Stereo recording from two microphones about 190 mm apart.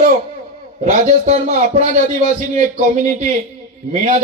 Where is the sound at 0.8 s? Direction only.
35° right (ahead or behind).